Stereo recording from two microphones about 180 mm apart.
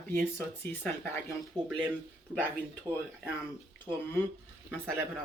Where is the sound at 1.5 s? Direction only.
25° right (ahead or behind).